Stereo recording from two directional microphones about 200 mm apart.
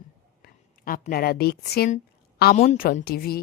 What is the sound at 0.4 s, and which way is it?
A woman's voice, 45° left (ahead or behind).